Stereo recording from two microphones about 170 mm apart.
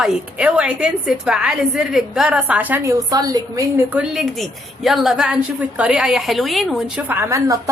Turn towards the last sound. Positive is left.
turn(degrees=-20)  # may be behind; listen again after turning